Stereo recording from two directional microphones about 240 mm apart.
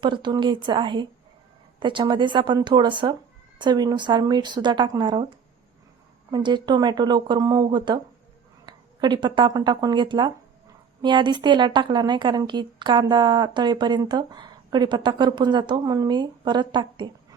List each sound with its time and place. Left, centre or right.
0.0 s a woman's voice: centre
6.3 s a woman's voice: centre